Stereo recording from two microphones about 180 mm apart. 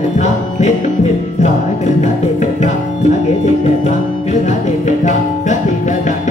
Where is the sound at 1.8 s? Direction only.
40° left (ahead or behind).